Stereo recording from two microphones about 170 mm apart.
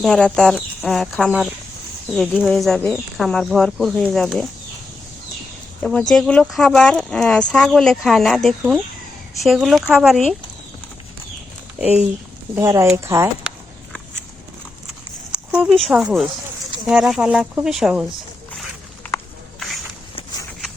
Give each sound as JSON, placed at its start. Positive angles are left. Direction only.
{"t": 0.0, "sound": "speech", "side_deg": 5}
{"t": 5.8, "sound": "speech", "side_deg": 5}
{"t": 12.5, "sound": "speech", "side_deg": -15}
{"t": 15.3, "sound": "speech", "side_deg": -5}
{"t": 19.5, "sound": "walk", "side_deg": 0}